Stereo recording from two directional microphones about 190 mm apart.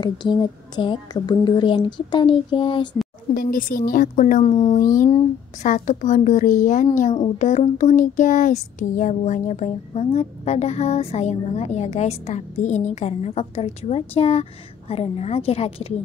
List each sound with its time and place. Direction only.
0.0 s a woman's voice: 25° left (ahead or behind)
3.3 s a woman's voice: 50° left (ahead or behind); by 4.7 s 30° left (ahead or behind)
4.7 s a woman's voice: 45° left (ahead or behind)
5.1 s a sound: 40° left (ahead or behind)